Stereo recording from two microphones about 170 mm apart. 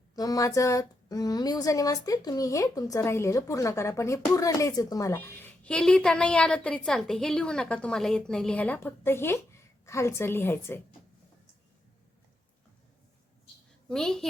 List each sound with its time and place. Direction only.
0.2 s a woman's voice: 20° left (ahead or behind)
13.8 s a woman's voice: 5° left (ahead or behind)